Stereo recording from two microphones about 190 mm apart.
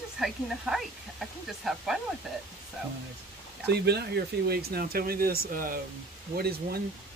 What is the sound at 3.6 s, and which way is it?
Speech, 60° right (ahead or behind).